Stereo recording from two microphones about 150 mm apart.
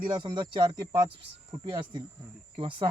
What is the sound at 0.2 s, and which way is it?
Speech, 30° right (ahead or behind).